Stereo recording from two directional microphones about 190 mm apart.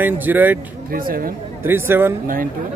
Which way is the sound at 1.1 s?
50° right (ahead or behind).